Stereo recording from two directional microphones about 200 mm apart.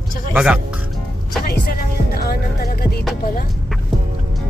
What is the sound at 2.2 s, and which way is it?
Music, 50° left (ahead or behind).